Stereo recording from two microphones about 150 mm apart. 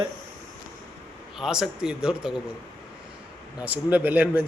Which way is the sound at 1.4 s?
5° right (ahead or behind).